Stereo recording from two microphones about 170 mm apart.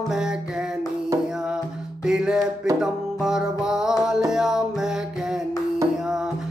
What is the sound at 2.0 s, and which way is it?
Music, 5° right (ahead or behind).